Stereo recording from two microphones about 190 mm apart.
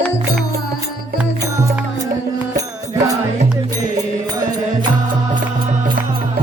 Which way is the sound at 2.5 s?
15° right (ahead or behind).